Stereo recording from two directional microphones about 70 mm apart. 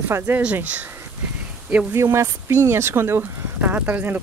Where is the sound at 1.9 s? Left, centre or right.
Right.